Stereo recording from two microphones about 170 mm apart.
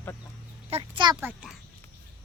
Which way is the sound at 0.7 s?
30° right (ahead or behind).